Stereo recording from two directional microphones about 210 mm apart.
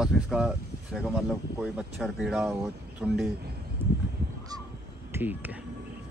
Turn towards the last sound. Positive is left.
turn(degrees=-10)  # may be behind; listen again after turning